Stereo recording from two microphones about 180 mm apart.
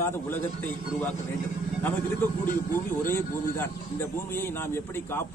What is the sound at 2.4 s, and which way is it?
Speech, 50° left (ahead or behind).